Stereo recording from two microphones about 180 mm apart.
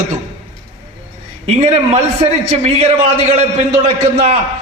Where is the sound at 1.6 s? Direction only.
35° right (ahead or behind).